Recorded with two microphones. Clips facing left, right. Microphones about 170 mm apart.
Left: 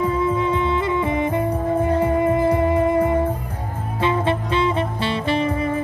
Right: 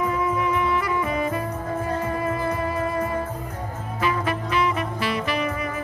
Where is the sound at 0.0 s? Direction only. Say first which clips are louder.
Left 4 dB; 30° left (ahead or behind).